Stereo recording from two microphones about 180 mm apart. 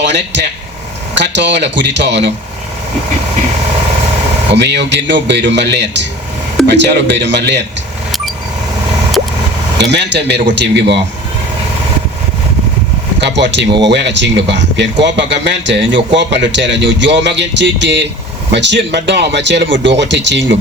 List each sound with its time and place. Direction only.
0.0 s speech: 75° right (ahead or behind)
4.5 s speech: 70° right (ahead or behind)
9.7 s speech: 70° right (ahead or behind)
13.1 s speech: 75° right (ahead or behind)